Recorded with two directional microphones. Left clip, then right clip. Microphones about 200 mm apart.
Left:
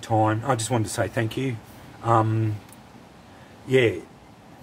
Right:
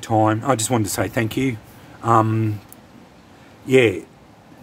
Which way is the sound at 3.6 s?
55° right (ahead or behind).